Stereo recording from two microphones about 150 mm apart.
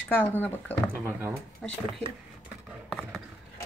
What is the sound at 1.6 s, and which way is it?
Speech, centre (ahead or behind).